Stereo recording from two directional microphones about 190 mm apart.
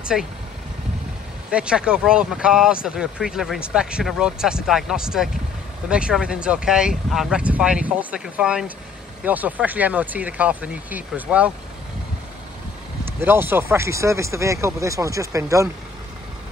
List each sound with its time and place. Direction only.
0.0 s speech: 5° right (ahead or behind)
1.5 s speech: 5° right (ahead or behind)
13.0 s speech: 10° right (ahead or behind)